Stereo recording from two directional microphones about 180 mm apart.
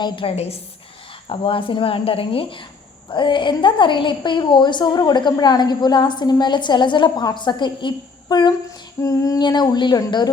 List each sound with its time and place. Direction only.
0.0 s a woman's voice: 30° left (ahead or behind)